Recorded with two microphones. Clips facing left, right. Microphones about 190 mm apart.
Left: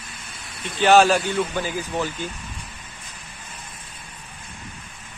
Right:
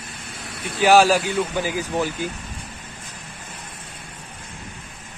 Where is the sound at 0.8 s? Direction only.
10° right (ahead or behind).